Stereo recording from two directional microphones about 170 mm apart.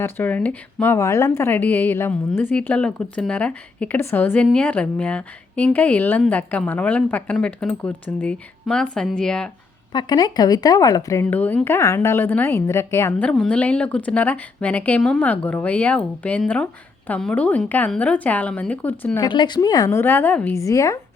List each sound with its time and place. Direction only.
0.0 s a woman's voice: 10° left (ahead or behind)
9.9 s a woman's voice: 25° left (ahead or behind); by 19.2 s 10° left (ahead or behind)
19.2 s a woman's voice: 25° left (ahead or behind)